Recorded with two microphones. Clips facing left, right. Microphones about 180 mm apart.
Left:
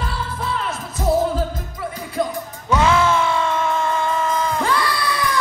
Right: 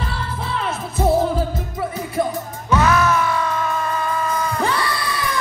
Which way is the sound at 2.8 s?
25° left (ahead or behind).